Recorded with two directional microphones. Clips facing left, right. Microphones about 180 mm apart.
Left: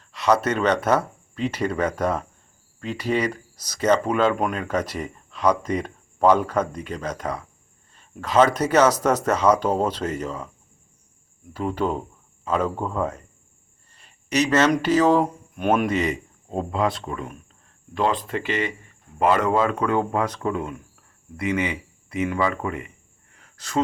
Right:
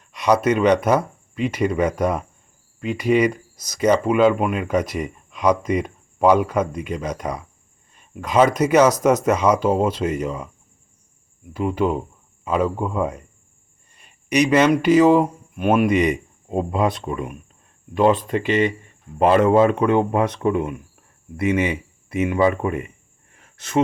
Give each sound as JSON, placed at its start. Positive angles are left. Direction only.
{"t": 0.0, "sound": "speech", "side_deg": -15}
{"t": 11.5, "sound": "speech", "side_deg": -10}
{"t": 23.3, "sound": "a sound", "side_deg": -25}